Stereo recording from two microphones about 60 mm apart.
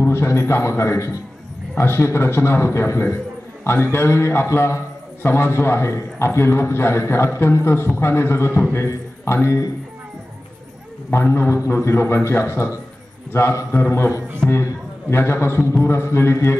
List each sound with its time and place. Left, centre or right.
0.0 s a man's voice: left
11.1 s a man's voice: left